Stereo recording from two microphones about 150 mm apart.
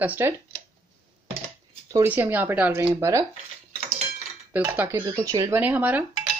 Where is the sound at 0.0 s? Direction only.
10° right (ahead or behind).